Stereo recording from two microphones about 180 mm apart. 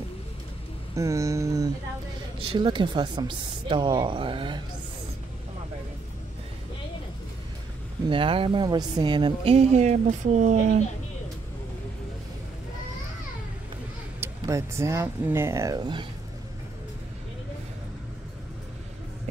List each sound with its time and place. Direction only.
0.9 s speech: 15° right (ahead or behind)
2.3 s speech: 30° right (ahead or behind)
8.1 s speech: 30° right (ahead or behind)
14.2 s speech: 15° right (ahead or behind)